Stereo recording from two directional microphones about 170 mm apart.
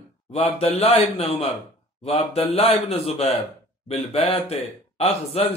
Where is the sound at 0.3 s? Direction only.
35° left (ahead or behind).